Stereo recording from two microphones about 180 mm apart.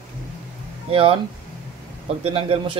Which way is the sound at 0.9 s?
30° right (ahead or behind).